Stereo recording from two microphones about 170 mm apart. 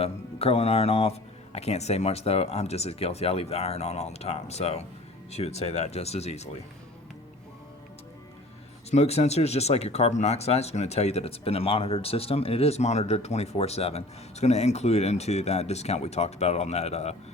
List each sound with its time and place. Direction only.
0.0 s speech: 35° left (ahead or behind)
8.9 s speech: 40° left (ahead or behind)